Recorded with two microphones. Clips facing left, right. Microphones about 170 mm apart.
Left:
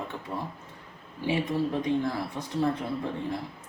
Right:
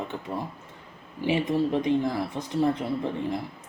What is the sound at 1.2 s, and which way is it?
Speech, 20° right (ahead or behind).